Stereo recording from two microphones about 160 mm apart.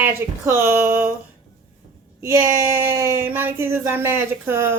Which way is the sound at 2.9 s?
15° right (ahead or behind).